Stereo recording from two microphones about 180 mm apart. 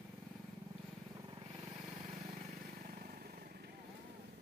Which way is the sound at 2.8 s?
50° right (ahead or behind).